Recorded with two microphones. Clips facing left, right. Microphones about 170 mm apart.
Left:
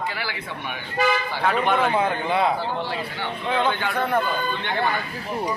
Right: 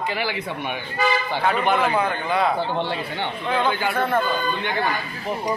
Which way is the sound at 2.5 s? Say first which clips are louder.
Right 2 dB; 25° right (ahead or behind).